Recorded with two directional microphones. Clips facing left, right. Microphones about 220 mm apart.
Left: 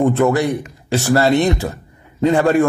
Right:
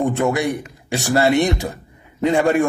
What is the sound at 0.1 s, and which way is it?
A man's voice, 15° right (ahead or behind).